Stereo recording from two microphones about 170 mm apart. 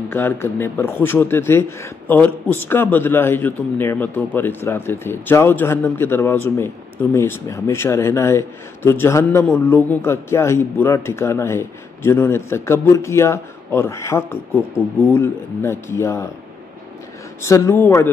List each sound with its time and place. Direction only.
0.1 s speech: 15° left (ahead or behind)
17.4 s speech: 15° left (ahead or behind)